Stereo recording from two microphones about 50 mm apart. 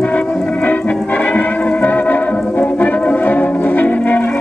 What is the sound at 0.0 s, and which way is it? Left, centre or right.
Music, left.